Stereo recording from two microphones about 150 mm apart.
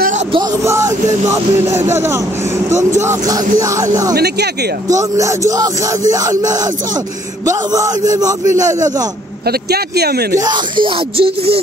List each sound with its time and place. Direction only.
0.7 s a man's voice: 20° right (ahead or behind)
1.3 s music: 20° right (ahead or behind)
3.0 s a man's voice: 20° right (ahead or behind)
9.5 s a man's voice: 90° right
10.3 s music: 30° right (ahead or behind)